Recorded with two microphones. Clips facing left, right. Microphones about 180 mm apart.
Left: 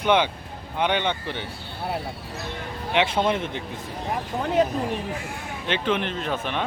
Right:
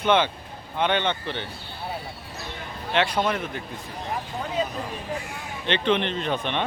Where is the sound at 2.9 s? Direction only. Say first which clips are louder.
Left 1 dB; 20° left (ahead or behind).